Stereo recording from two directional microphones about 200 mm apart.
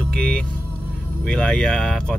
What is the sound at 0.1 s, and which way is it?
Vehicle, 5° left (ahead or behind).